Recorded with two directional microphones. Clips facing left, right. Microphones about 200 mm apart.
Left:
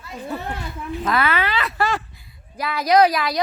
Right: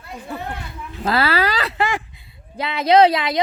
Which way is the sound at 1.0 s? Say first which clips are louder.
Right 3 dB; 30° right (ahead or behind).